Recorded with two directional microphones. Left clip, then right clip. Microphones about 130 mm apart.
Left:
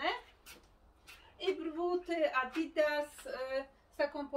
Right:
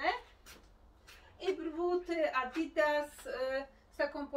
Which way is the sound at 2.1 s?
25° left (ahead or behind).